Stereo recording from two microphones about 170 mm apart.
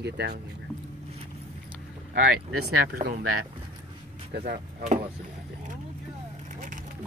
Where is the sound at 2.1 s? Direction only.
60° right (ahead or behind).